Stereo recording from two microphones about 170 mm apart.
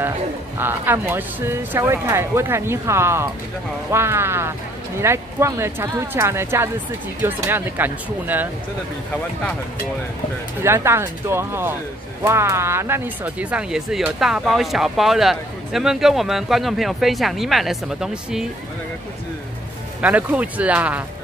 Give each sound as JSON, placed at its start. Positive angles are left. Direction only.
{"t": 0.6, "sound": "speech", "side_deg": -10}
{"t": 10.6, "sound": "speech", "side_deg": -15}
{"t": 20.0, "sound": "speech", "side_deg": -10}